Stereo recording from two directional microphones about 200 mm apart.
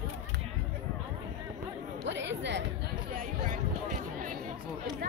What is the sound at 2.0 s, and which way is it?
Chatter, 65° right (ahead or behind).